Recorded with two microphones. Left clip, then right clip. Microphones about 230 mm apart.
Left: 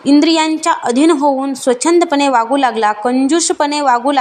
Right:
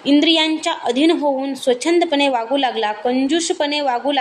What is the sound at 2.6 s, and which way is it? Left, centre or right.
Speech, left.